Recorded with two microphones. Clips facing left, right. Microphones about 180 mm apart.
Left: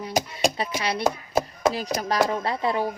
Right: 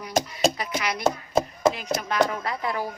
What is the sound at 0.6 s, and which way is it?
Speech, 30° left (ahead or behind).